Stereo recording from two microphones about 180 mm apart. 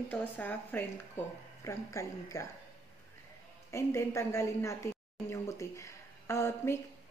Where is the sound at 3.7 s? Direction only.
15° left (ahead or behind).